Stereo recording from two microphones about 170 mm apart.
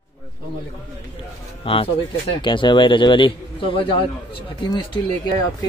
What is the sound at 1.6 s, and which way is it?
A man's voice, 35° left (ahead or behind).